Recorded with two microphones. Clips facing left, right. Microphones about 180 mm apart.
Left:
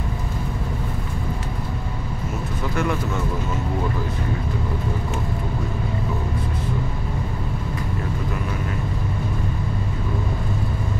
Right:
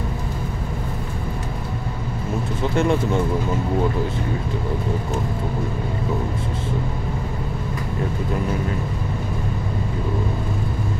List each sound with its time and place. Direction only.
2.7 s speech: 25° right (ahead or behind)